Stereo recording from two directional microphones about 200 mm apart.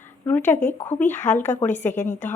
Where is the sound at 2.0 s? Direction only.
35° left (ahead or behind).